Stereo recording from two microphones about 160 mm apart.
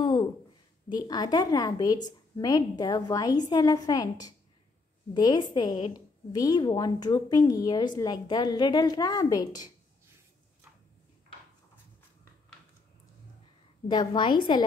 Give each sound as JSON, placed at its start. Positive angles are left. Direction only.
{"t": 0.0, "sound": "a sound", "side_deg": 30}
{"t": 0.8, "sound": "a woman's voice", "side_deg": 25}
{"t": 13.8, "sound": "a woman's voice", "side_deg": 30}